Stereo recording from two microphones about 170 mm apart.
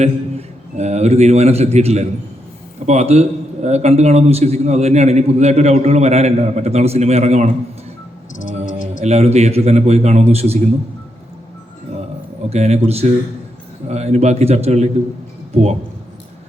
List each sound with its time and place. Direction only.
0.0 s a man's voice: 40° right (ahead or behind)
9.0 s a man's voice: 40° right (ahead or behind)
12.5 s a man's voice: 40° right (ahead or behind)